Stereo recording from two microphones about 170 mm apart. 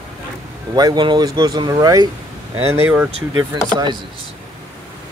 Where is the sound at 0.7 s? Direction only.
25° right (ahead or behind).